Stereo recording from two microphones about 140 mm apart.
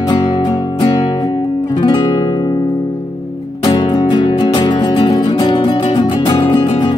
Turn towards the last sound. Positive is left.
turn(degrees=30)  # may be behind; listen again after turning